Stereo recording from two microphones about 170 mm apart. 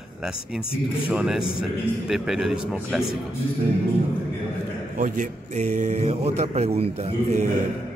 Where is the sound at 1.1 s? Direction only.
5° right (ahead or behind).